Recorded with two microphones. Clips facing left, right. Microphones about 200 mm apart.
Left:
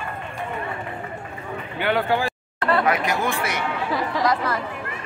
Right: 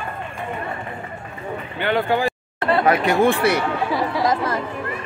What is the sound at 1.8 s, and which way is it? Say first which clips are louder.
Speech: right 2 dB; 5° left (ahead or behind).